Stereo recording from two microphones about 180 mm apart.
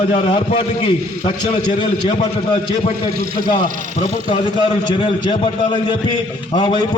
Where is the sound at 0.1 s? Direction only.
30° left (ahead or behind).